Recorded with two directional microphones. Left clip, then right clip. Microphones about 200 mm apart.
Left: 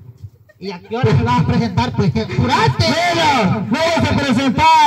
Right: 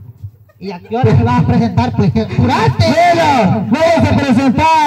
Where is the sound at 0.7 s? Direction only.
30° left (ahead or behind).